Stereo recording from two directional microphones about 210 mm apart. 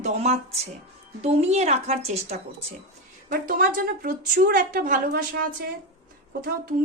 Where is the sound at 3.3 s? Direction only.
40° right (ahead or behind).